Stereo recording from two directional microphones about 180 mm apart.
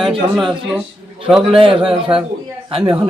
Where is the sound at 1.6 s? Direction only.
30° right (ahead or behind).